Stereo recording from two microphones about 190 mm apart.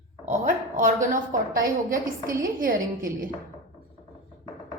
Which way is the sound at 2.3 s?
45° right (ahead or behind).